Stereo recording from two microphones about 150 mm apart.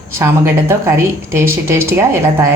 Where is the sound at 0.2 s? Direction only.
15° right (ahead or behind).